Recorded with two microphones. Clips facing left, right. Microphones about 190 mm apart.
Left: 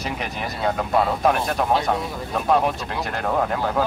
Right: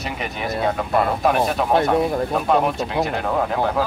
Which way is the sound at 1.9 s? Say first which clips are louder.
Right 9 dB; 55° right (ahead or behind).